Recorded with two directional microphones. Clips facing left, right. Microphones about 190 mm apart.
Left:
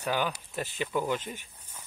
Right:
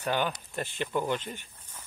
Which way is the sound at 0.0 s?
5° left (ahead or behind).